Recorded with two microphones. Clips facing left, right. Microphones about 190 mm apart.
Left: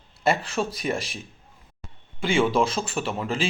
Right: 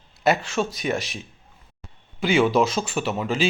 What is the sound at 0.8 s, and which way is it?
Speech, 5° right (ahead or behind).